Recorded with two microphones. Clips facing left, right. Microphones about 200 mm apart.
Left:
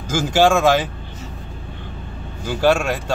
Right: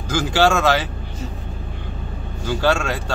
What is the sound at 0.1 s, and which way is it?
Speech, 15° left (ahead or behind).